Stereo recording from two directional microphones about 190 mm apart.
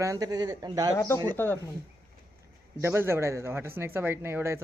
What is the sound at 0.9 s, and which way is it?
Speech, 15° left (ahead or behind).